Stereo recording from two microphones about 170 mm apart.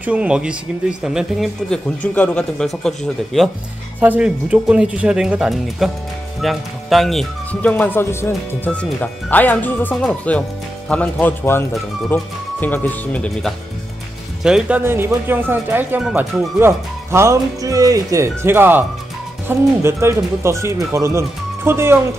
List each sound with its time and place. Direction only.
0.0 s speech: 10° right (ahead or behind)
4.0 s speech: 10° right (ahead or behind)
7.7 s speech: 10° left (ahead or behind)
14.4 s speech: 5° right (ahead or behind)
16.5 s speech: 15° right (ahead or behind)